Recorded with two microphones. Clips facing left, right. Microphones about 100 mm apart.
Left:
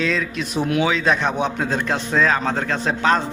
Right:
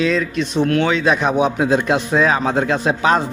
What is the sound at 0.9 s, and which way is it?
A man's voice, 5° right (ahead or behind).